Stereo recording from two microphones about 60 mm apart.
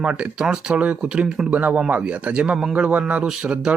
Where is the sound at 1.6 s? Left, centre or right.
Right.